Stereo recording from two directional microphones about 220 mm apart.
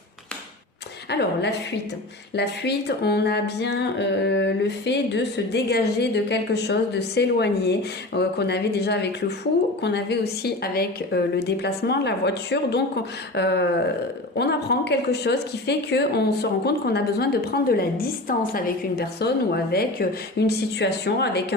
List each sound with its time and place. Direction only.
1.1 s speech: 50° left (ahead or behind)